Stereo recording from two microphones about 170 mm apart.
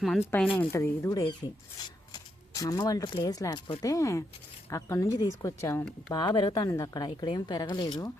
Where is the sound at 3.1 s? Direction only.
25° left (ahead or behind).